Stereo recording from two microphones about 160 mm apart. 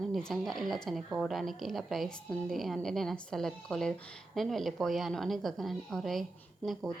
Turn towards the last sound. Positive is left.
turn(degrees=0)  # may be behind; listen again after turning